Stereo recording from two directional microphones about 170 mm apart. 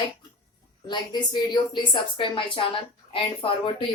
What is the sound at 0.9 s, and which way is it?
Speech, 25° left (ahead or behind).